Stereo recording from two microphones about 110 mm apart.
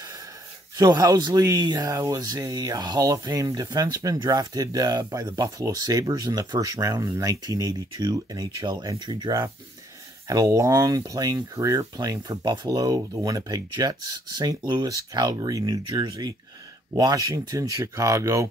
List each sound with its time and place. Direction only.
0.7 s speech: 35° right (ahead or behind)